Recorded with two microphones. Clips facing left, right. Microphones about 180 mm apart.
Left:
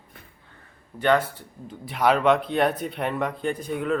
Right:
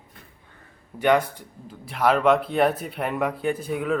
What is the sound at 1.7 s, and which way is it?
Speech, centre (ahead or behind).